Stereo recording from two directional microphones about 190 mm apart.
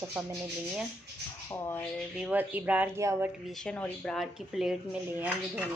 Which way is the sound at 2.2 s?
10° right (ahead or behind).